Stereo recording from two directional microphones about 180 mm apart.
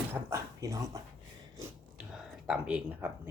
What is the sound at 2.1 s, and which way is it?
Speech, 5° right (ahead or behind).